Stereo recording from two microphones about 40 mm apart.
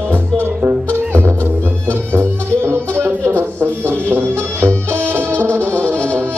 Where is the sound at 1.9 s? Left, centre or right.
Right.